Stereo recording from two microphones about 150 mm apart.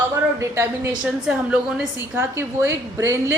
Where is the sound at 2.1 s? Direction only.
15° right (ahead or behind).